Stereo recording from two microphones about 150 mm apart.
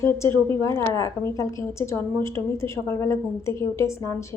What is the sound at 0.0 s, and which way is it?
A woman's voice, 20° left (ahead or behind).